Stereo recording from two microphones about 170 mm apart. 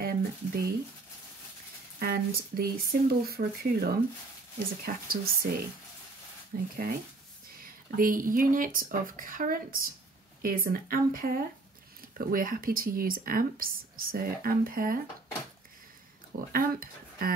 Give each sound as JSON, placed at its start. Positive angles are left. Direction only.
{"t": 0.0, "sound": "speech", "side_deg": -60}
{"t": 2.0, "sound": "speech", "side_deg": -60}
{"t": 6.5, "sound": "speech", "side_deg": -60}
{"t": 16.3, "sound": "speech", "side_deg": -60}